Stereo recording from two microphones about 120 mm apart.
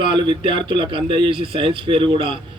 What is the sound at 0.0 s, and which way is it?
A man's voice, 40° right (ahead or behind).